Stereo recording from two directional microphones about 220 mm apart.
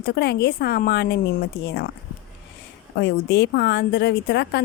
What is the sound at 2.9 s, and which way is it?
Speech, 50° left (ahead or behind).